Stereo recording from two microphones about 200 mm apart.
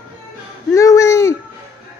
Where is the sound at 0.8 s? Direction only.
15° left (ahead or behind).